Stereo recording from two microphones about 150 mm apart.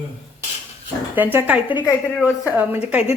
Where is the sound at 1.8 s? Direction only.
10° left (ahead or behind).